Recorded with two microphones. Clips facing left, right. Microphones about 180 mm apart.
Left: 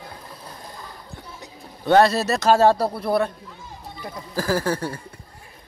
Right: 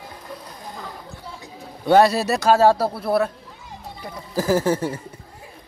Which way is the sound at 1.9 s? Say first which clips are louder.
Right 1 dB; 10° right (ahead or behind).